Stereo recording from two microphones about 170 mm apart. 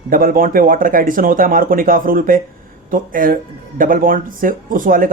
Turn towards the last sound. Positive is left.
turn(degrees=-50)  # may be behind; listen again after turning